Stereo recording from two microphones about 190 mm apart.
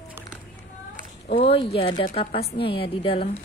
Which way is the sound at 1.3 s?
30° left (ahead or behind).